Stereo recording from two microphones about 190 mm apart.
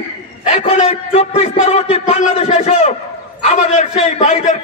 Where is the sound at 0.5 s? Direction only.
35° left (ahead or behind).